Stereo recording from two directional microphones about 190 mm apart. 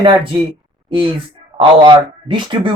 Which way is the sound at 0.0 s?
30° right (ahead or behind).